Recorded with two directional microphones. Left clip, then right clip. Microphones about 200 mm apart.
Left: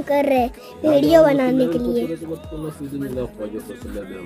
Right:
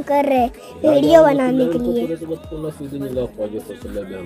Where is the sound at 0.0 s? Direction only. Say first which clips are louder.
Right 2 dB; 5° left (ahead or behind).